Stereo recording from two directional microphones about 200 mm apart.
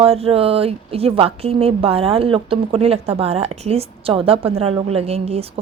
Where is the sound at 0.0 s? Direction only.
30° right (ahead or behind).